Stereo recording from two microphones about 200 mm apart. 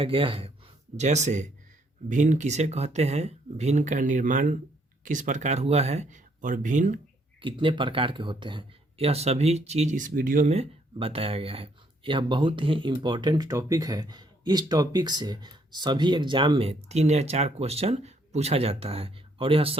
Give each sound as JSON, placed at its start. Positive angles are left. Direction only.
{"t": 0.0, "sound": "speech", "side_deg": -25}
{"t": 7.4, "sound": "speech", "side_deg": -25}